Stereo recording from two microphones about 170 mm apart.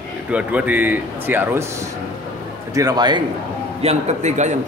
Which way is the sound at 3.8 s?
40° right (ahead or behind).